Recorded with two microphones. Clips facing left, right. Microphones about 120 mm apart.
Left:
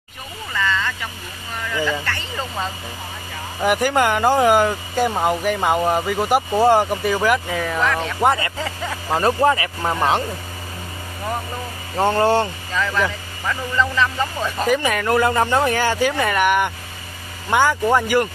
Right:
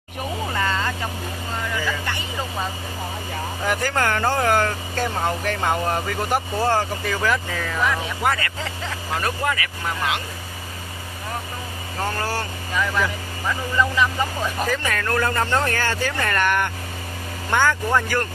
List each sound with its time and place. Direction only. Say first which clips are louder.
0.5 s vehicle: left 3 dB; 35° right (ahead or behind)
2.0 s vehicle: left 1 dB; 10° right (ahead or behind)
3.6 s speech: left 6 dB; 15° left (ahead or behind)
7.8 s speech: left 1 dB; 5° right (ahead or behind)
8.2 s speech: left 7 dB; 20° left (ahead or behind)
8.5 s speech: left 4 dB; 5° left (ahead or behind)
9.1 s speech: left 8 dB; 30° left (ahead or behind)
12.0 s speech: left 10 dB; 25° left (ahead or behind)
12.7 s speech: left 2 dB; 15° right (ahead or behind)
14.6 s speech: left 7 dB; 15° left (ahead or behind)